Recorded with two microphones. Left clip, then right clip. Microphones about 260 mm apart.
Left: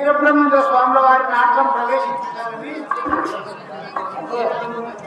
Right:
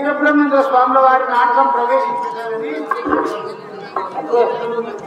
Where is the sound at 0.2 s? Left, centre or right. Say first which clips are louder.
Even; right.